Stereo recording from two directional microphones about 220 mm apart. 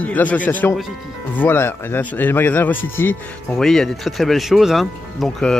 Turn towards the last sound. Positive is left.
turn(degrees=0)  # may be behind; listen again after turning